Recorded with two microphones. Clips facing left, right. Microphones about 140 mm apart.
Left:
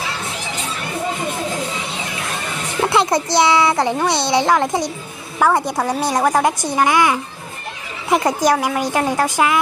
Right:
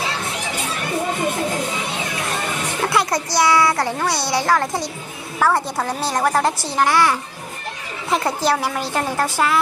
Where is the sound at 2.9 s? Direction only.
25° left (ahead or behind).